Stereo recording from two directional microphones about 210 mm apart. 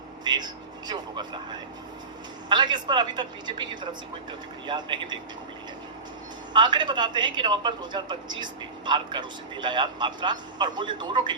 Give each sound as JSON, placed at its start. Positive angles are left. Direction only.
{"t": 0.3, "sound": "a sound", "side_deg": -20}
{"t": 2.5, "sound": "a woman's voice", "side_deg": -20}
{"t": 6.5, "sound": "a woman's voice", "side_deg": -20}